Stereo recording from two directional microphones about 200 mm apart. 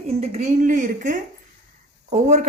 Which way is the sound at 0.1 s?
30° right (ahead or behind).